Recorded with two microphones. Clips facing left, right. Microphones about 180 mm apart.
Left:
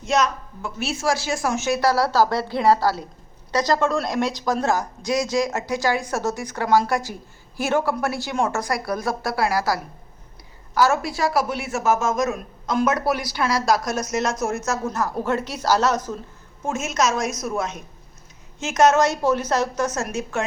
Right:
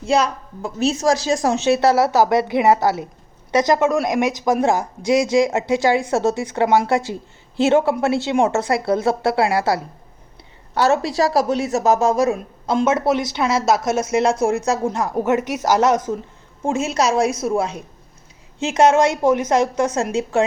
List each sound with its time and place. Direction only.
0.0 s a woman's voice: 30° right (ahead or behind)
14.8 s speech: 15° right (ahead or behind)
16.6 s a woman's voice: 30° right (ahead or behind)
19.1 s speech: 15° right (ahead or behind)